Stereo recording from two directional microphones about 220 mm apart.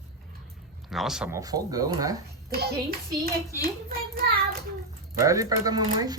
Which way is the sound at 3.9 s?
40° right (ahead or behind).